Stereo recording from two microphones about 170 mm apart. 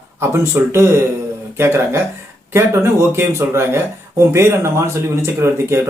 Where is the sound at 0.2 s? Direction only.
15° right (ahead or behind).